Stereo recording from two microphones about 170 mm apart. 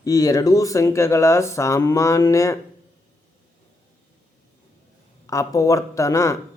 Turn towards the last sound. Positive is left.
turn(degrees=20)  # may be behind; listen again after turning